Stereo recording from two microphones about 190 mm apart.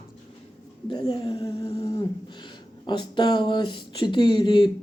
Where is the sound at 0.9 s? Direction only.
25° left (ahead or behind).